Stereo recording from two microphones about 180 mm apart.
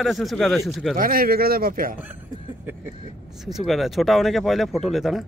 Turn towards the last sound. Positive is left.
turn(degrees=0)  # may be behind; listen again after turning